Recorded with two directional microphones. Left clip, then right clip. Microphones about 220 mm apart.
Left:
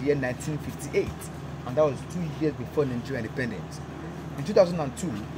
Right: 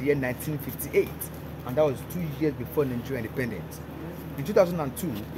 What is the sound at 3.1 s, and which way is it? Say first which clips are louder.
Speech: even; 5° right (ahead or behind).